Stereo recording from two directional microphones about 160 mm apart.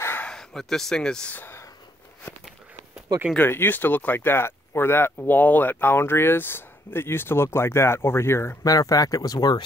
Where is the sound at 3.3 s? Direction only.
15° left (ahead or behind).